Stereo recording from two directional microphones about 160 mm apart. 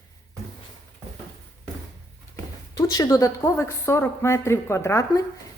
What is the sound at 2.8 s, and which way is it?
A woman's voice, 25° left (ahead or behind).